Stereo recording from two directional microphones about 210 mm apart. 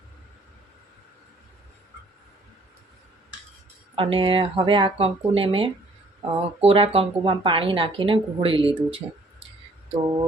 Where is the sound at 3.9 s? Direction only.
25° right (ahead or behind).